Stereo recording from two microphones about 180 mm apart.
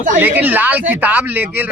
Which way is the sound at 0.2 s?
10° right (ahead or behind).